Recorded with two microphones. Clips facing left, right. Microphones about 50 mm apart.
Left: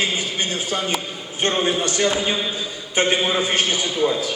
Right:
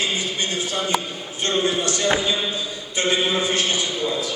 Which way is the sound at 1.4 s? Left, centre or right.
Left.